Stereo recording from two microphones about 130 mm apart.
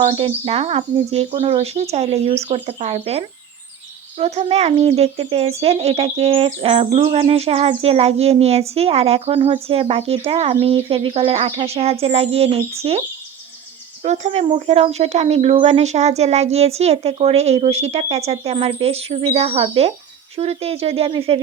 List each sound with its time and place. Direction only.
0.0 s speech: 50° right (ahead or behind)
14.0 s speech: 60° right (ahead or behind)